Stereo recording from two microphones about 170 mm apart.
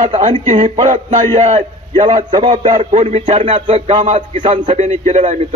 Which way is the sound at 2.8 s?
40° right (ahead or behind).